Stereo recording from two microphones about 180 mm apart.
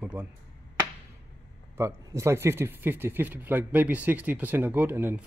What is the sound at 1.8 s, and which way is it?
Speech, 15° right (ahead or behind).